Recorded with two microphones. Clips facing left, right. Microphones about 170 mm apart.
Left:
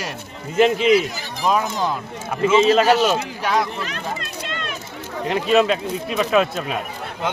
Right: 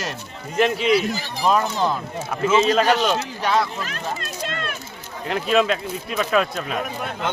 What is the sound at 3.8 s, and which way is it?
Speech, 45° right (ahead or behind).